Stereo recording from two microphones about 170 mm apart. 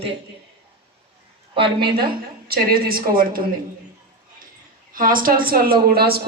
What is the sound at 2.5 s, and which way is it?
Speech, 60° right (ahead or behind).